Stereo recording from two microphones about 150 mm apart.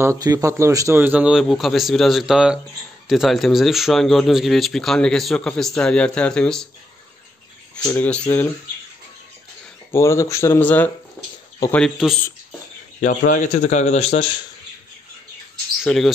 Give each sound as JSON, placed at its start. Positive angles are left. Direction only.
{"t": 0.0, "sound": "a man's voice", "side_deg": -20}
{"t": 7.8, "sound": "speech", "side_deg": 15}
{"t": 9.9, "sound": "speech", "side_deg": 20}
{"t": 11.7, "sound": "speech", "side_deg": 0}
{"t": 13.0, "sound": "speech", "side_deg": 60}
{"t": 15.8, "sound": "speech", "side_deg": 0}